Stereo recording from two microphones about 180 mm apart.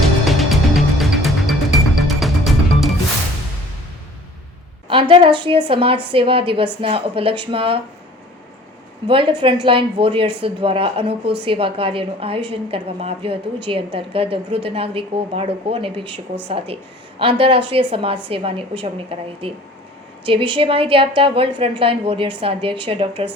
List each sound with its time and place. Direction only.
0.0 s music: centre (ahead or behind)
4.9 s a woman's voice: 30° right (ahead or behind)
9.0 s a woman's voice: 30° right (ahead or behind)